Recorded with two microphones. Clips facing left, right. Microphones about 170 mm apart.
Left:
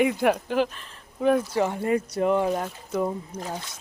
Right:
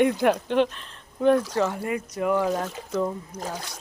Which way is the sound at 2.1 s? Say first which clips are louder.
Right 2 dB; 25° left (ahead or behind).